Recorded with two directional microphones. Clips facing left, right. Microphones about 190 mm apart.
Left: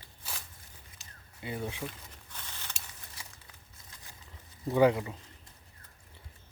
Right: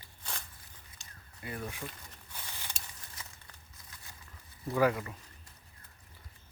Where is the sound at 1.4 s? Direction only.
25° left (ahead or behind).